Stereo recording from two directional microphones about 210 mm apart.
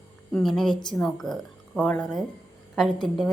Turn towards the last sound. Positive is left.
turn(degrees=0)  # may be behind; listen again after turning